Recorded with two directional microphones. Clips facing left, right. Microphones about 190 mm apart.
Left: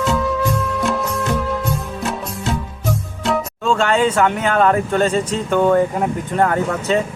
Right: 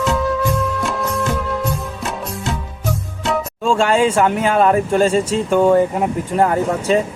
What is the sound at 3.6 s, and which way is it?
Speech, 10° right (ahead or behind).